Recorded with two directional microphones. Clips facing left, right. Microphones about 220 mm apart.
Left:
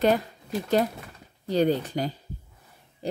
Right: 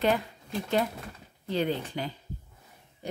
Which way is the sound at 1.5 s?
40° left (ahead or behind).